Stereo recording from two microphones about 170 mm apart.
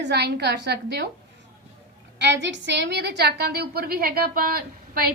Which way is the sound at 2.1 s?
90° right.